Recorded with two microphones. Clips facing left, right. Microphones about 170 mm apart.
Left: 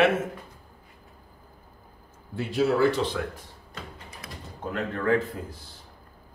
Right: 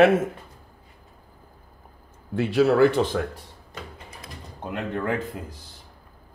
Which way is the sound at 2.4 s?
70° right (ahead or behind).